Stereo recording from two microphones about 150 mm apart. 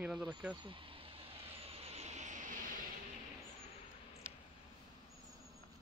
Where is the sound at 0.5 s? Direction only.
35° right (ahead or behind); by 2.6 s 55° right (ahead or behind).